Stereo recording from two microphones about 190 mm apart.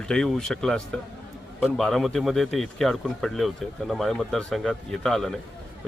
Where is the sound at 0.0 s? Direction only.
5° left (ahead or behind).